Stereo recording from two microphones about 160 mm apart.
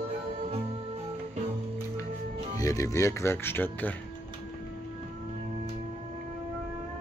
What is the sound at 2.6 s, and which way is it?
Speech, 20° left (ahead or behind).